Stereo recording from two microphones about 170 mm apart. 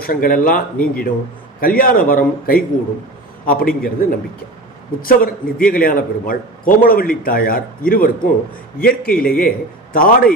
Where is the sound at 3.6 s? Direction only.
60° left (ahead or behind).